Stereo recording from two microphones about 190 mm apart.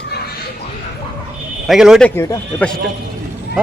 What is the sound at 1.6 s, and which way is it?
Speech, centre (ahead or behind).